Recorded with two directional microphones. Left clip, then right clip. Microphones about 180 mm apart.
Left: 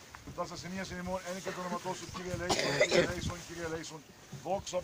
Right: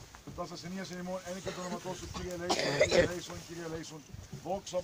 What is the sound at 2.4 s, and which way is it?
Speech, 55° left (ahead or behind).